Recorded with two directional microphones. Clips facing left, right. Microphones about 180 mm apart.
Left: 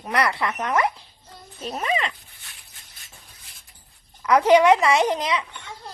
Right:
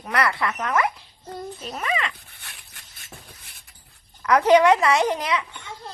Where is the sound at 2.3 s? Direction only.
70° right (ahead or behind).